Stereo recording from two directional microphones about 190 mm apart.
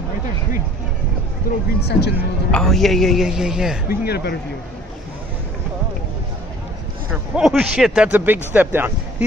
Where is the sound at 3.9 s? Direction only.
60° left (ahead or behind).